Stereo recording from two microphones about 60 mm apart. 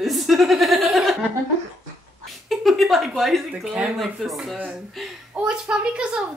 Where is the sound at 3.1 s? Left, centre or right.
Centre.